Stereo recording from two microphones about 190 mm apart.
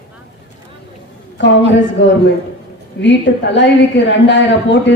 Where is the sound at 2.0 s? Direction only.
70° left (ahead or behind).